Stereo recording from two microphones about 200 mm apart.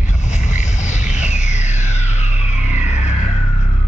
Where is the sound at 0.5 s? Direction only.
35° left (ahead or behind).